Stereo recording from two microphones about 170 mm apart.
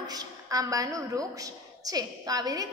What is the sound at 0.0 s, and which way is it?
A woman's voice, 20° right (ahead or behind).